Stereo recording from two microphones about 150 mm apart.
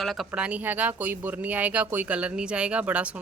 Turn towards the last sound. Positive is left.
turn(degrees=-10)  # may be behind; listen again after turning